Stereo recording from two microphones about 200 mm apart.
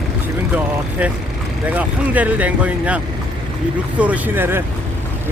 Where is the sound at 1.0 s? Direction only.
5° right (ahead or behind).